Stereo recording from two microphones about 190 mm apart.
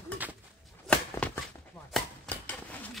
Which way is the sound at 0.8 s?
5° left (ahead or behind).